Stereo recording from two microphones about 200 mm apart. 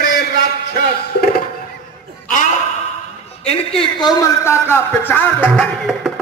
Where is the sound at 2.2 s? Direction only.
40° left (ahead or behind).